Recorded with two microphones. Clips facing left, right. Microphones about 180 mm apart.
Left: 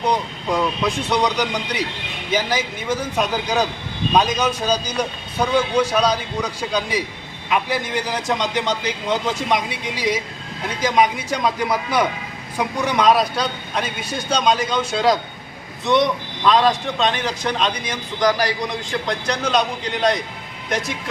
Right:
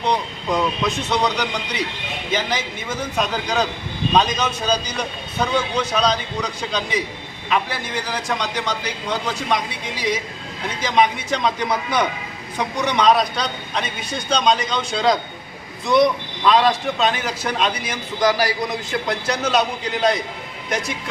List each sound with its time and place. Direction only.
0.0 s a man's voice: 10° left (ahead or behind)